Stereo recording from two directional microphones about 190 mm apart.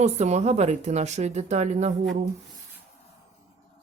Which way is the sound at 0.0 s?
35° right (ahead or behind).